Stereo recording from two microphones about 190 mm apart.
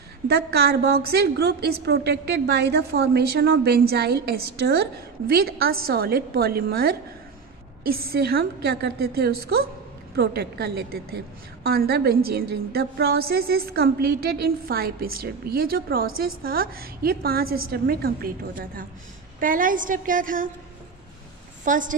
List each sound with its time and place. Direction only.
0.3 s a woman's voice: 55° right (ahead or behind)
21.6 s a woman's voice: 45° right (ahead or behind)